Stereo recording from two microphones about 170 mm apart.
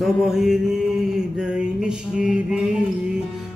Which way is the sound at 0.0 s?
Centre (ahead or behind).